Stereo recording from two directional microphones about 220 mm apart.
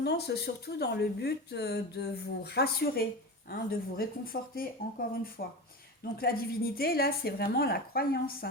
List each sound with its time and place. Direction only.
0.0 s a woman's voice: 50° left (ahead or behind)